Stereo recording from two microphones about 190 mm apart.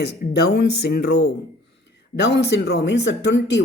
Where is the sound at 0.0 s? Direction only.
60° left (ahead or behind).